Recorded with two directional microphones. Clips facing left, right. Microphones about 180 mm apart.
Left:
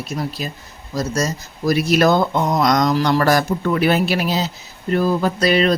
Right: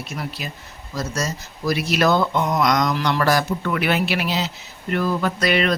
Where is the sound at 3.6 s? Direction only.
35° left (ahead or behind).